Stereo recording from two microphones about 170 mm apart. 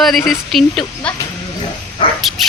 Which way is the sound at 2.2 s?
Centre (ahead or behind).